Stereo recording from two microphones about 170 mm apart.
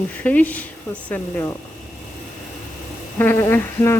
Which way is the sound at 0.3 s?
10° left (ahead or behind).